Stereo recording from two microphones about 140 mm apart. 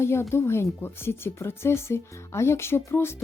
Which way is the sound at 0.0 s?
20° left (ahead or behind).